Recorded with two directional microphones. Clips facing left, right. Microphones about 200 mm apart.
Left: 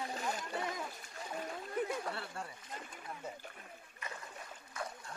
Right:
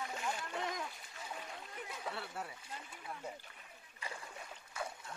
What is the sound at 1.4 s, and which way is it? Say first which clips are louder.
Splash: left 10 dB; 45° left (ahead or behind).